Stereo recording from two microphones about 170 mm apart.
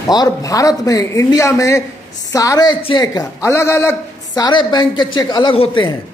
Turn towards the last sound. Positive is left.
turn(degrees=30)  # may be behind; listen again after turning